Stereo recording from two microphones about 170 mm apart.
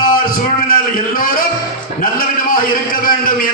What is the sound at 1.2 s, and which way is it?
Speech, 55° left (ahead or behind).